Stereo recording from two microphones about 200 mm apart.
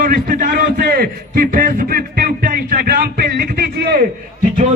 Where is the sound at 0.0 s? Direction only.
45° right (ahead or behind).